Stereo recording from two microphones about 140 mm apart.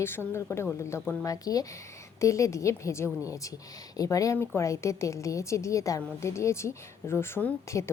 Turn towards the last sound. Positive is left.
turn(degrees=15)  # may be behind; listen again after turning